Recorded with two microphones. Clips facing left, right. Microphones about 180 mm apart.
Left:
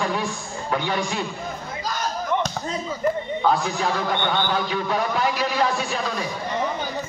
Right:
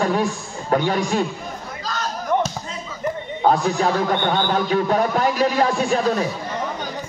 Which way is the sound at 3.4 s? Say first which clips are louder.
Right 7 dB; 45° right (ahead or behind).